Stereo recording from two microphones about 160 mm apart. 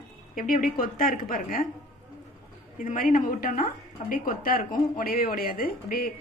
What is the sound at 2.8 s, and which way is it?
A woman's voice, 60° left (ahead or behind).